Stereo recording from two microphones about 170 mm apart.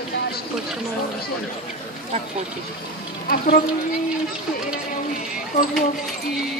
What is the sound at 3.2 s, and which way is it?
Speech, 60° left (ahead or behind).